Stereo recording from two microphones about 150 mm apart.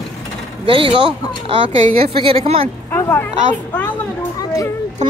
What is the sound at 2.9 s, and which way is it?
Speech, 15° left (ahead or behind).